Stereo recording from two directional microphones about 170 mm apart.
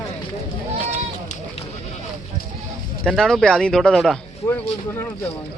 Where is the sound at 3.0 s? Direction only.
Centre (ahead or behind).